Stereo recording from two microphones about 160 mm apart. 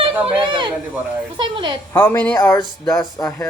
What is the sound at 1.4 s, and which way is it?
Speech, 30° right (ahead or behind).